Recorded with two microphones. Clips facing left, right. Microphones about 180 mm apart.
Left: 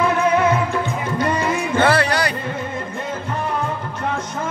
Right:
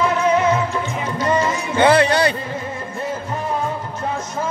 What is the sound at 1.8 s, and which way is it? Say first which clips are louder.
Music: right 4 dB; 20° right (ahead or behind).